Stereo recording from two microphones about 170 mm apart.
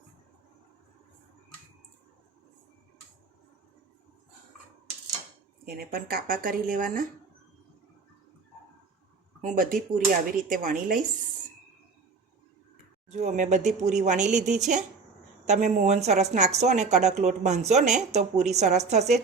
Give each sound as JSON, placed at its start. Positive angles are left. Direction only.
{"t": 5.6, "sound": "a woman's voice", "side_deg": -65}
{"t": 9.4, "sound": "speech", "side_deg": -55}
{"t": 13.1, "sound": "speech", "side_deg": -45}